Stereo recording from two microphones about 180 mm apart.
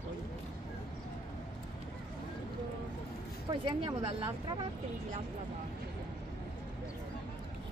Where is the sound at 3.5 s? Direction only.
25° right (ahead or behind).